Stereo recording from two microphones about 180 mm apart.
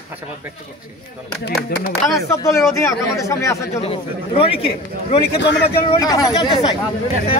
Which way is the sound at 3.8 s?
30° left (ahead or behind).